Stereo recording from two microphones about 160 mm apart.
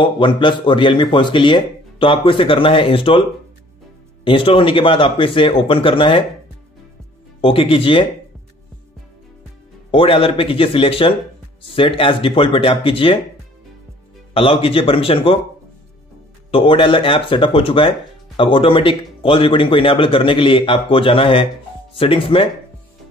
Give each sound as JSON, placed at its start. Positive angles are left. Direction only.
{"t": 0.0, "sound": "speech", "side_deg": 30}
{"t": 7.4, "sound": "speech", "side_deg": 35}
{"t": 9.8, "sound": "speech", "side_deg": 35}
{"t": 14.3, "sound": "speech", "side_deg": 35}
{"t": 16.4, "sound": "speech", "side_deg": 35}